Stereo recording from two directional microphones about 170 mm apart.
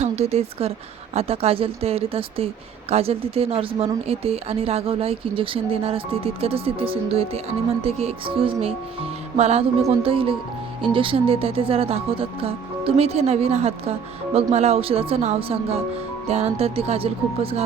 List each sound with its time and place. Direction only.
0.0 s speech: 40° right (ahead or behind)